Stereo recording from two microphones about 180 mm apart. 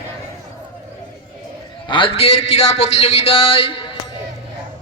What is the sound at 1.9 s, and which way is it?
A man's voice, 30° left (ahead or behind).